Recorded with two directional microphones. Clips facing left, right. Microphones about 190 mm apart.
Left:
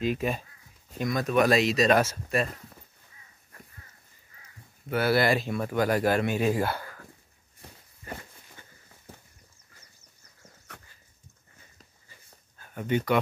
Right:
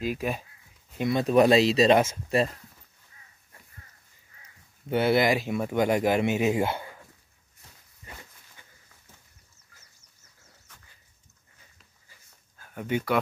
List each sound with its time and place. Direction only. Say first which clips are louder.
0.0 s speech: left 1 dB; 5° right (ahead or behind)
1.0 s speech: right 3 dB; 30° right (ahead or behind)
4.8 s speech: right 2 dB; 25° right (ahead or behind)
5.2 s speech: right 1 dB; 15° right (ahead or behind)
8.6 s a sound: left 4 dB; 15° right (ahead or behind)
10.7 s dog: left 10 dB; 70° left (ahead or behind)
12.5 s speech: left 1 dB; 5° right (ahead or behind)